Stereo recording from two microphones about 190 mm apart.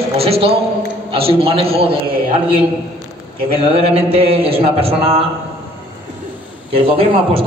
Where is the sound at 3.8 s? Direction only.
30° right (ahead or behind).